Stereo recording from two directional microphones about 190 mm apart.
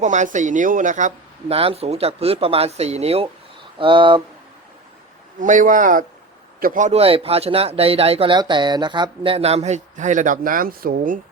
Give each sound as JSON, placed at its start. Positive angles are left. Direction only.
{"t": 0.0, "sound": "speech", "side_deg": -40}
{"t": 5.4, "sound": "a man's voice", "side_deg": -45}